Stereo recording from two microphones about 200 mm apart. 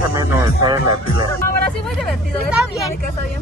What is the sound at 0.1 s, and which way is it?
Speech, 20° right (ahead or behind).